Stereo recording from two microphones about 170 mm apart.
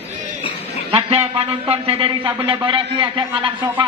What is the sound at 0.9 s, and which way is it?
A man's voice, 35° right (ahead or behind).